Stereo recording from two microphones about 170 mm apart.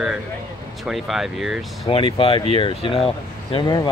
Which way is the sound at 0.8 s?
Centre (ahead or behind).